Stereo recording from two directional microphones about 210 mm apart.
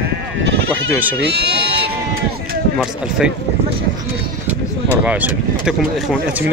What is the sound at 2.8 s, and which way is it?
Speech, 5° right (ahead or behind).